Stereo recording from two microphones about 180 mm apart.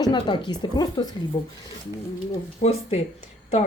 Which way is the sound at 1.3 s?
35° left (ahead or behind).